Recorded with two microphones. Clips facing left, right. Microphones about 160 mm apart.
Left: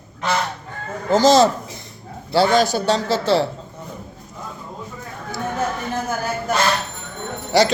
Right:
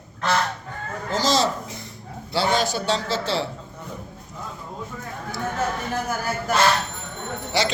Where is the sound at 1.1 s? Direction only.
50° left (ahead or behind).